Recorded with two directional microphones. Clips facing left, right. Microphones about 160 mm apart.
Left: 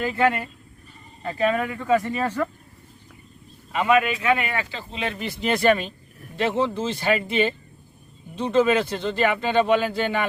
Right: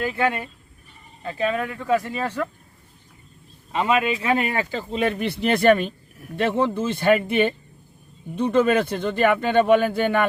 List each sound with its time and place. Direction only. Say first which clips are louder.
0.0 s speech: left 1 dB; 15° right (ahead or behind)
1.8 s speech: left 1 dB; 5° right (ahead or behind)
3.7 s speech: left 1 dB; 30° right (ahead or behind); by 10.2 s 55° right (ahead or behind)